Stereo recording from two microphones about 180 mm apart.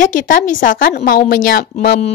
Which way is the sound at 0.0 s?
45° left (ahead or behind).